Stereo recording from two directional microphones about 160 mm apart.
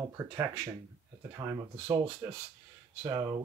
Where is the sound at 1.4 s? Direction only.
15° right (ahead or behind).